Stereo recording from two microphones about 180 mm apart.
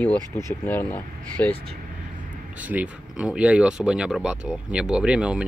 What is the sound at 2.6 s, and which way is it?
Speech, 10° right (ahead or behind).